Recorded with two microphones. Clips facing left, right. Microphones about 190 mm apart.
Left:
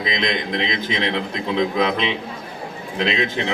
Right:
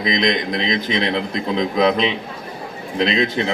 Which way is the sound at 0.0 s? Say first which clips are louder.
Right 4 dB; 40° right (ahead or behind).